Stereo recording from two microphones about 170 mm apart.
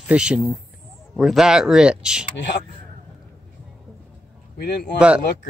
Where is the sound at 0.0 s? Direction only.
5° right (ahead or behind).